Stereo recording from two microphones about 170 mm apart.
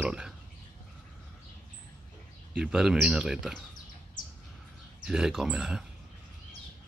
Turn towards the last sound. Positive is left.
turn(degrees=-5)  # may be behind; listen again after turning